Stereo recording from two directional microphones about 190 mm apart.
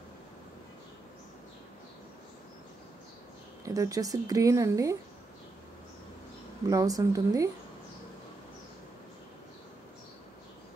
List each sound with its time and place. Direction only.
3.6 s speech: 20° right (ahead or behind)
6.7 s speech: 20° right (ahead or behind)